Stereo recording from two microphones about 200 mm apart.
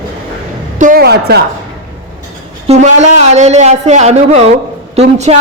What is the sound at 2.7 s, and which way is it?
Speech, 35° right (ahead or behind).